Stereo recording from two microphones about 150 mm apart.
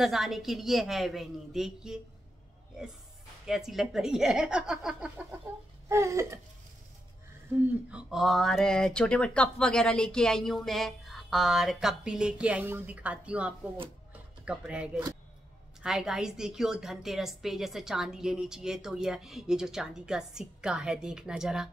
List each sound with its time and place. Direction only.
0.0 s a woman's voice: centre (ahead or behind)
3.4 s a woman's voice: 5° right (ahead or behind)
5.9 s a sound: 20° right (ahead or behind)
7.9 s a woman's voice: centre (ahead or behind)